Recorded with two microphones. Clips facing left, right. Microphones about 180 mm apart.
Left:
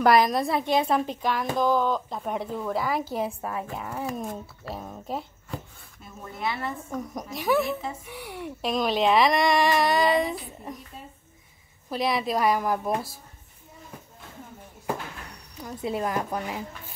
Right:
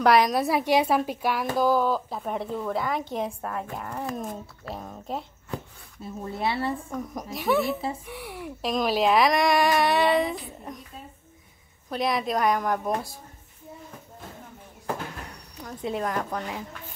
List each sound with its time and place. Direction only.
0.0 s a woman's voice: centre (ahead or behind)
6.0 s speech: 30° right (ahead or behind)
6.9 s a woman's voice: centre (ahead or behind)
11.9 s a woman's voice: centre (ahead or behind)
15.6 s a woman's voice: 5° left (ahead or behind)